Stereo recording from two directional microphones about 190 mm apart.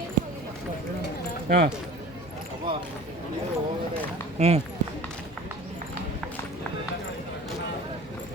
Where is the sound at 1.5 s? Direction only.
50° right (ahead or behind).